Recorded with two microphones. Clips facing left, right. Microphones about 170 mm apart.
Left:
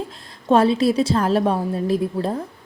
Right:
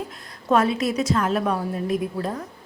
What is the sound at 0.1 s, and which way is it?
A woman's voice, 25° left (ahead or behind).